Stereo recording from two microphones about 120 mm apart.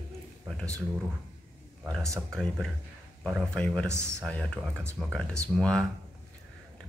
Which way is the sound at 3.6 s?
5° left (ahead or behind).